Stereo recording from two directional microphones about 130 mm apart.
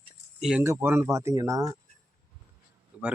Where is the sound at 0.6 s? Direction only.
20° right (ahead or behind).